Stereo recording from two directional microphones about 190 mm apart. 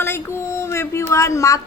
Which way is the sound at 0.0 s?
10° left (ahead or behind).